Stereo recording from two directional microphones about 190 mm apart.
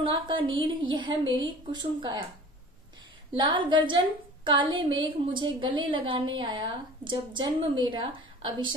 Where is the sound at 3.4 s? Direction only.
25° right (ahead or behind).